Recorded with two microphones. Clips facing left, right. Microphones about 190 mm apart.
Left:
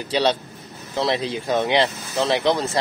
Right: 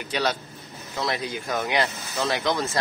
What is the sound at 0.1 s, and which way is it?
Speech, 30° left (ahead or behind).